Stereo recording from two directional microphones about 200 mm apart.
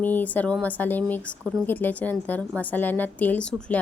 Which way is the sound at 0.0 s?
10° left (ahead or behind).